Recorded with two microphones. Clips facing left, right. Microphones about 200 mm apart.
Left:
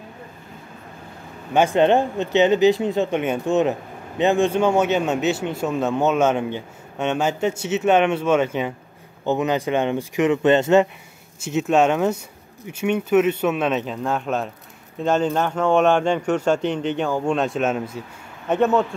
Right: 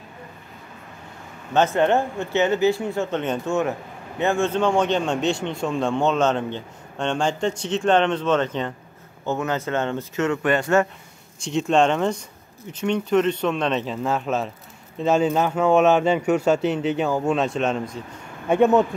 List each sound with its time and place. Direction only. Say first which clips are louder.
1.5 s speech: left 2 dB; 15° left (ahead or behind)
11.3 s speech: left 1 dB; 5° left (ahead or behind)
18.5 s speech: right 2 dB; 15° right (ahead or behind)